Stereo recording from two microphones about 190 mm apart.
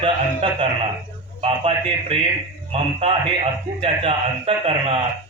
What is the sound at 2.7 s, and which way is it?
A man's voice, 30° right (ahead or behind).